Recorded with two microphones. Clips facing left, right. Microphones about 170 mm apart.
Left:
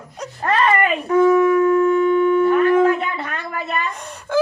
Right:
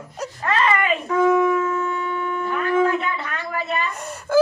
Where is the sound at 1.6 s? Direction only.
40° left (ahead or behind).